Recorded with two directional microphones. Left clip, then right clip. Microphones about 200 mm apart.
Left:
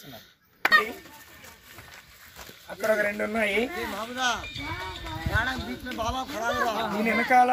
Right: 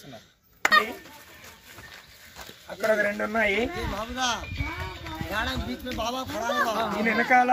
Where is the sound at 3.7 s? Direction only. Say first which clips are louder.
Even; 50° right (ahead or behind).